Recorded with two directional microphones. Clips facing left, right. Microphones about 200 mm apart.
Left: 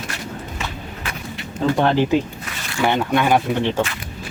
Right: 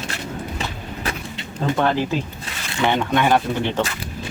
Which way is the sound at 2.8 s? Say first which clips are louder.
Left 1 dB; 10° left (ahead or behind).